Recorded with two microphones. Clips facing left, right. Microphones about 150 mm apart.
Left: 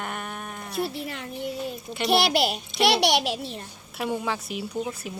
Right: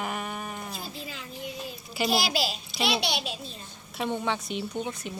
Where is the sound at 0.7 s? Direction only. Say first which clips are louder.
Left 9 dB; 70° left (ahead or behind).